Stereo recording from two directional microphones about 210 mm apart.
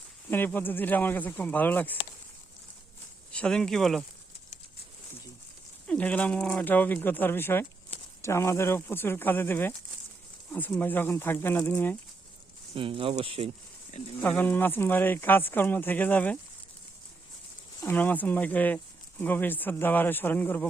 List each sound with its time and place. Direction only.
0.3 s speech: 10° left (ahead or behind)
3.3 s speech: 5° left (ahead or behind)
5.9 s speech: 5° left (ahead or behind)
12.7 s speech: 25° right (ahead or behind)
14.2 s speech: 10° left (ahead or behind)
17.8 s speech: 10° left (ahead or behind)